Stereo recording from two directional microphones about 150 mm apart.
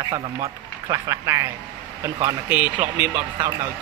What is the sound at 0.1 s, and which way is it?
A man's voice, 25° right (ahead or behind).